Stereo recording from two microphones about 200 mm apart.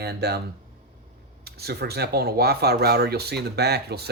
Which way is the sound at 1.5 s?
55° right (ahead or behind).